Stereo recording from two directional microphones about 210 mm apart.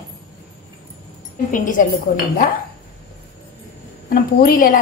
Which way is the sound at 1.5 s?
40° left (ahead or behind).